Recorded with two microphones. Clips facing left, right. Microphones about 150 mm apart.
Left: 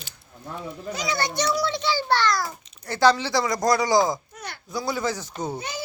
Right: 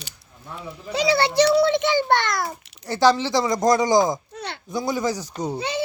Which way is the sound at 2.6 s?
85° right.